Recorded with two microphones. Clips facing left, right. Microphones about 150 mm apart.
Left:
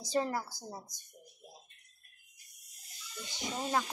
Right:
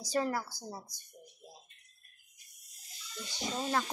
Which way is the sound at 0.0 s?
25° left (ahead or behind).